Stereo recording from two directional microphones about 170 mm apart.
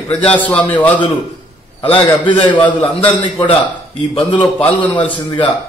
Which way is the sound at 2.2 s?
30° left (ahead or behind).